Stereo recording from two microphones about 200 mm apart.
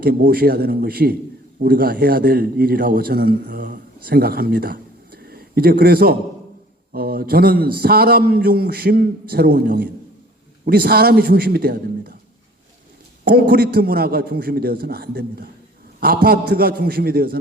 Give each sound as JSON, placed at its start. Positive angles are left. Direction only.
{"t": 0.0, "sound": "a man's voice", "side_deg": -50}
{"t": 13.2, "sound": "a man's voice", "side_deg": -50}